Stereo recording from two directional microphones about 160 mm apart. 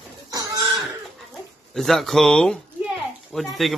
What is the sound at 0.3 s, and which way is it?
Chicken, 25° right (ahead or behind).